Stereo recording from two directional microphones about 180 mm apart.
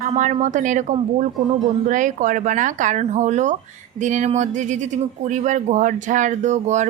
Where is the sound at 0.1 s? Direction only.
40° right (ahead or behind).